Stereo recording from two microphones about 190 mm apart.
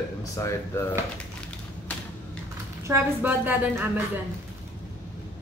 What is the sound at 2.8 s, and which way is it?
A woman's voice, 10° right (ahead or behind).